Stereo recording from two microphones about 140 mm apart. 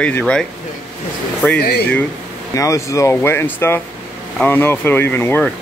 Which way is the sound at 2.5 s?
20° left (ahead or behind).